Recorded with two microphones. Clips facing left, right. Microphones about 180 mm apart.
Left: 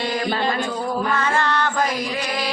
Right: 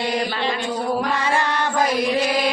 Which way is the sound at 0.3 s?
45° left (ahead or behind).